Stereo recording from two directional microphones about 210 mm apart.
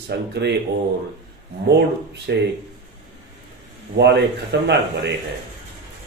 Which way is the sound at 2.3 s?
55° right (ahead or behind).